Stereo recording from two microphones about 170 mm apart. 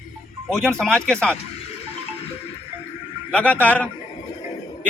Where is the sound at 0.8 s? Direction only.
5° left (ahead or behind).